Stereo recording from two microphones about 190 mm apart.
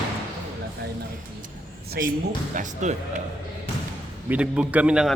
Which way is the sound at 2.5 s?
40° right (ahead or behind).